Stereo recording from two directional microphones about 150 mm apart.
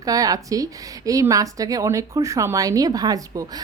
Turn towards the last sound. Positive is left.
turn(degrees=-25)  # may be behind; listen again after turning